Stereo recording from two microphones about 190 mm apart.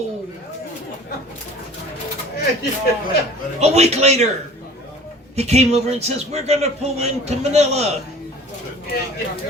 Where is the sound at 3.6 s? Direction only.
35° right (ahead or behind).